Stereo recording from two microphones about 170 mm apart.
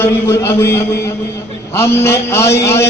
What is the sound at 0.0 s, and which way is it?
A man's voice, 15° left (ahead or behind).